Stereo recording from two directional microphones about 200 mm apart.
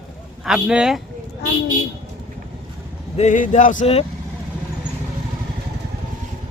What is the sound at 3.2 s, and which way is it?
Speech, 40° left (ahead or behind).